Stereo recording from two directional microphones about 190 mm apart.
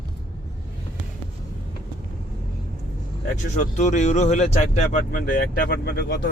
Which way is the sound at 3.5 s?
40° left (ahead or behind).